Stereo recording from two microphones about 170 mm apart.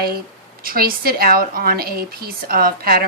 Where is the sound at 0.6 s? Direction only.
60° right (ahead or behind).